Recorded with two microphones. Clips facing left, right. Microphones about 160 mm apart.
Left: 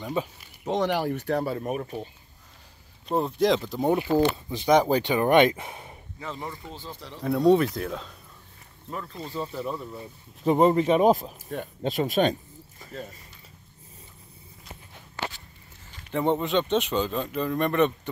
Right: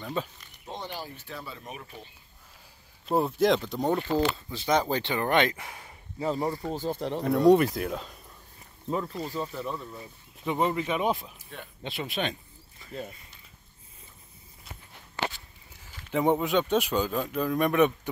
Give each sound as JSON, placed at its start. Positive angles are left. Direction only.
{"t": 0.0, "sound": "speech", "side_deg": 10}
{"t": 0.7, "sound": "speech", "side_deg": 85}
{"t": 3.1, "sound": "speech", "side_deg": -5}
{"t": 3.9, "sound": "speech", "side_deg": 15}
{"t": 6.1, "sound": "speech", "side_deg": -35}
{"t": 7.2, "sound": "speech", "side_deg": 0}
{"t": 8.9, "sound": "speech", "side_deg": -15}
{"t": 9.4, "sound": "speech", "side_deg": 5}
{"t": 10.4, "sound": "speech", "side_deg": 40}
{"t": 15.9, "sound": "speech", "side_deg": -10}